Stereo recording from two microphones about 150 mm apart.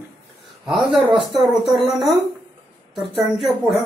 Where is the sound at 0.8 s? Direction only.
35° right (ahead or behind).